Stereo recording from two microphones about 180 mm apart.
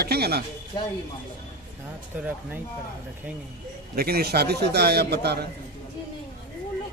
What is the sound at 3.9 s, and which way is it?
Speech, 60° right (ahead or behind).